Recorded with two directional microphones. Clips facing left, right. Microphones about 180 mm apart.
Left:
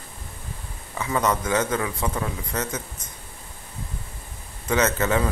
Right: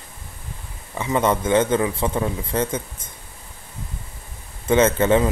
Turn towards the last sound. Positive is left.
turn(degrees=-25)  # may be behind; listen again after turning